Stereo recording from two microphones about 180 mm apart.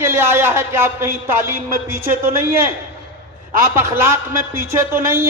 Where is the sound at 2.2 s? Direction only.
55° right (ahead or behind).